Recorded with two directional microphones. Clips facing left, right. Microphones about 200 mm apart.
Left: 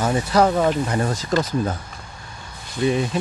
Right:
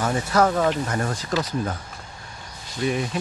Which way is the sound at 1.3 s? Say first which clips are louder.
Left 4 dB; 50° left (ahead or behind).